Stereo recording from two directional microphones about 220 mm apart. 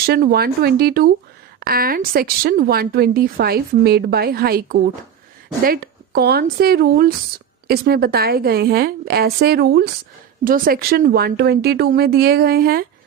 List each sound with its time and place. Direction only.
0.1 s speech: 45° right (ahead or behind)